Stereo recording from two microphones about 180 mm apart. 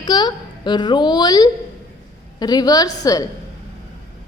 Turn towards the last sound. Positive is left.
turn(degrees=20)  # may be behind; listen again after turning